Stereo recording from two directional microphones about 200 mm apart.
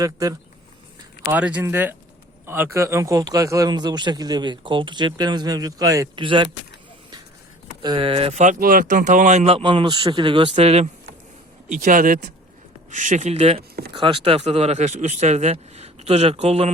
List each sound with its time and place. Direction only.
0.0 s a man's voice: 15° right (ahead or behind)
7.8 s a man's voice: 25° right (ahead or behind)
13.6 s speech: 50° right (ahead or behind)
13.9 s speech: 25° right (ahead or behind)